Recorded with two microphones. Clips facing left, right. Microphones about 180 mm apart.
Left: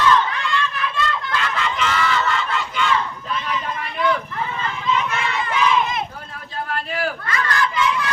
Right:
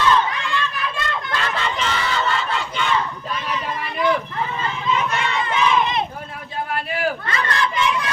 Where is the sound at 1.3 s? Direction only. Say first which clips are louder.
Even; 35° right (ahead or behind).